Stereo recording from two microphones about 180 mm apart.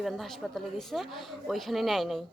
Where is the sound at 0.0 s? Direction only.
Centre (ahead or behind).